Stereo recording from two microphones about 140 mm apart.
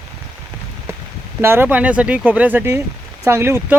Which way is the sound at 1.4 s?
15° right (ahead or behind).